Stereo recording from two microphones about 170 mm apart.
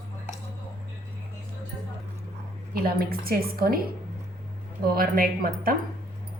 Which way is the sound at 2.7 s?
65° right (ahead or behind).